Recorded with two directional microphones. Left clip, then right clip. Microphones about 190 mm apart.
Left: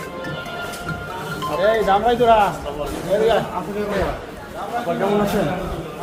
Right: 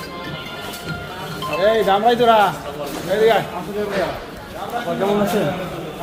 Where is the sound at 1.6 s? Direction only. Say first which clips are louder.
Right 1 dB; 55° right (ahead or behind).